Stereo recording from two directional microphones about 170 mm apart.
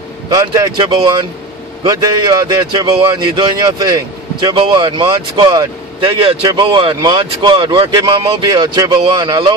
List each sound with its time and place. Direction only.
0.3 s speech: 20° right (ahead or behind)